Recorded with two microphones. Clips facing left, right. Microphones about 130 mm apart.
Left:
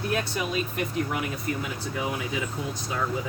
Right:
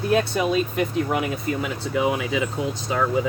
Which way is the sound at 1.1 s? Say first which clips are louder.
Right 6 dB; 90° right.